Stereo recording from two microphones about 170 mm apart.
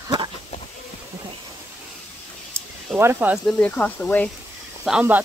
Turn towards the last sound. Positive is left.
turn(degrees=-5)  # may be behind; listen again after turning